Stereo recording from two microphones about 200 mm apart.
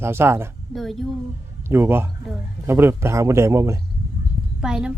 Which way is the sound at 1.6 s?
10° right (ahead or behind).